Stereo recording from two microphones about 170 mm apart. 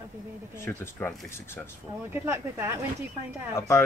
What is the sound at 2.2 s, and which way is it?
Speech, 15° right (ahead or behind).